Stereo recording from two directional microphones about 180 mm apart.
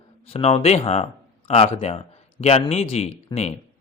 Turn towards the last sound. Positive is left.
turn(degrees=35)  # may be behind; listen again after turning